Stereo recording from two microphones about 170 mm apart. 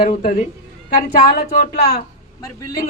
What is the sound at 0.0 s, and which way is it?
Speech, 50° left (ahead or behind).